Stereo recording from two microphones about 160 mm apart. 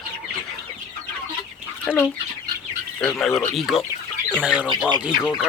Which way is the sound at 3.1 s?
Centre (ahead or behind).